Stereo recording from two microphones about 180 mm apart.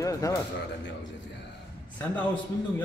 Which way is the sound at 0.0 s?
20° left (ahead or behind).